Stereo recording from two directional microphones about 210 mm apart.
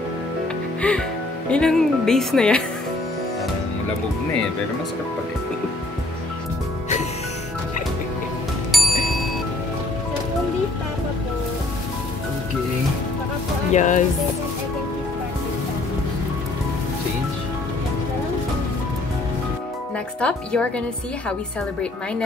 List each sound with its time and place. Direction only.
0.8 s music: 5° left (ahead or behind)
1.5 s speech: 5° left (ahead or behind)
8.7 s bicycle bell: centre (ahead or behind)
13.7 s speech: 35° left (ahead or behind)
20.2 s speech: 5° left (ahead or behind)